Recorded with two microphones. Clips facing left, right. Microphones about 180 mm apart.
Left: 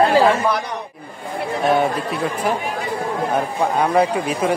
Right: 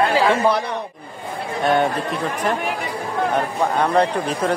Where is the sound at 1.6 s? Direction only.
5° left (ahead or behind).